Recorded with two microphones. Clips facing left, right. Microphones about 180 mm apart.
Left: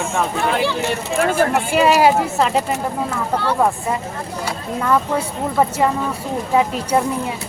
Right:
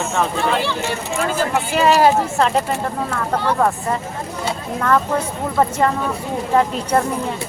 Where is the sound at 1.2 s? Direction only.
55° left (ahead or behind).